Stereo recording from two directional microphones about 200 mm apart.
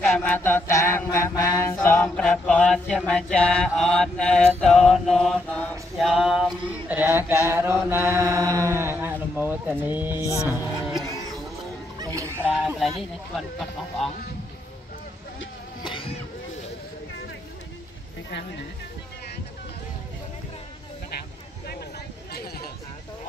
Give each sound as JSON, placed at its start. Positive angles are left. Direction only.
{"t": 0.0, "sound": "mantra", "side_deg": 5}
{"t": 10.2, "sound": "music", "side_deg": 15}
{"t": 10.5, "sound": "mantra", "side_deg": -10}
{"t": 12.0, "sound": "speech", "side_deg": -15}
{"t": 13.4, "sound": "mantra", "side_deg": 0}
{"t": 15.8, "sound": "a sound", "side_deg": 25}